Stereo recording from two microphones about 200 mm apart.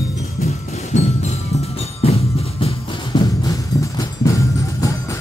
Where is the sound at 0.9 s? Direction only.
35° left (ahead or behind).